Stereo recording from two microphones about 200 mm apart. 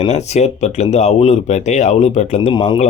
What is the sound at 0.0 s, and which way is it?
Speech, 35° left (ahead or behind).